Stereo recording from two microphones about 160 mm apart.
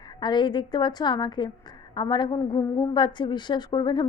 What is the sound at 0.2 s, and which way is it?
A woman's voice, 30° left (ahead or behind).